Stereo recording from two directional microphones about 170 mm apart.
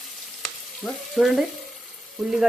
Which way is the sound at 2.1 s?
Centre (ahead or behind).